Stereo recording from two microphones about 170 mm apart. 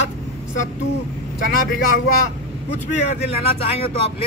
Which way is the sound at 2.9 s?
40° left (ahead or behind).